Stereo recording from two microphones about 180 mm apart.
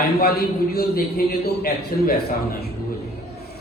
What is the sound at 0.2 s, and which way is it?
A man's voice, 55° left (ahead or behind).